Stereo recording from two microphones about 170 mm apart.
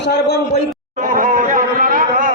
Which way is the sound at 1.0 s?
50° right (ahead or behind).